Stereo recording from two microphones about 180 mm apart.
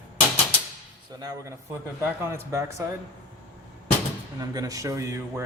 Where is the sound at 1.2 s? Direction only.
15° right (ahead or behind).